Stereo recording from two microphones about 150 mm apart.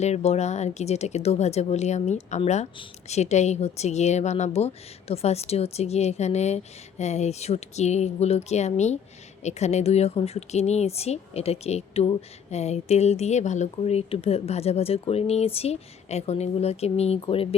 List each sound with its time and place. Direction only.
0.0 s speech: 50° left (ahead or behind)